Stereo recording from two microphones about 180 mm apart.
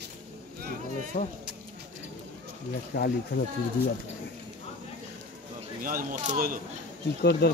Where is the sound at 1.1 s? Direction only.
60° left (ahead or behind).